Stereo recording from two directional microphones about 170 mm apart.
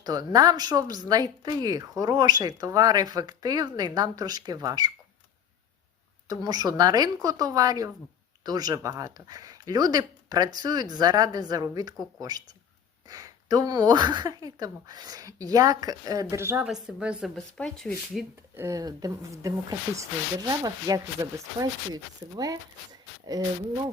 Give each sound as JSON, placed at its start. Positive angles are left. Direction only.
{"t": 0.0, "sound": "speech", "side_deg": -25}
{"t": 6.2, "sound": "speech", "side_deg": -20}
{"t": 18.5, "sound": "speech", "side_deg": -15}